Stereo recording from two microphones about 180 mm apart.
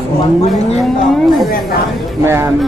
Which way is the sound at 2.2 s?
15° right (ahead or behind).